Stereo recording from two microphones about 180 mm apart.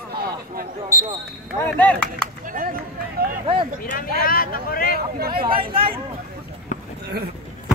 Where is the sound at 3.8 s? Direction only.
50° left (ahead or behind).